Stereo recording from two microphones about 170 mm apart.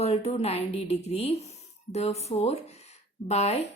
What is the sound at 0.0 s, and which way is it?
A woman's voice, 35° left (ahead or behind).